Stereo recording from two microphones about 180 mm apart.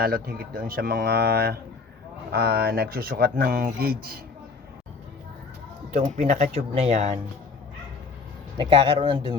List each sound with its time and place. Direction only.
0.0 s speech: 55° right (ahead or behind)
6.0 s speech: 45° right (ahead or behind)
8.5 s speech: 30° right (ahead or behind)